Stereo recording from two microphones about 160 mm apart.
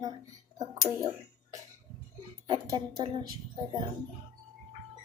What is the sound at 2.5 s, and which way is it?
A woman's voice, 25° right (ahead or behind).